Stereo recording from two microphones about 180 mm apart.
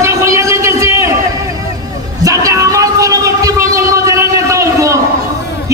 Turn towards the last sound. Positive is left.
turn(degrees=-15)  # may be behind; listen again after turning